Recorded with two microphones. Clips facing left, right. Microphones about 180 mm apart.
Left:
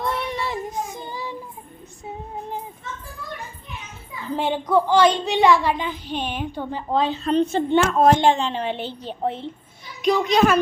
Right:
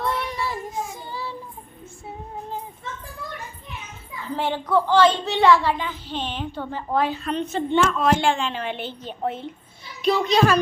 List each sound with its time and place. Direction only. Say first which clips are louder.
0.0 s child singing: left 1 dB; 25° left (ahead or behind)
4.4 s a child's voice: left 2 dB; 15° left (ahead or behind)
7.8 s speech: left 4 dB; 45° left (ahead or behind)
10.0 s a child's voice: left 1 dB; 15° left (ahead or behind)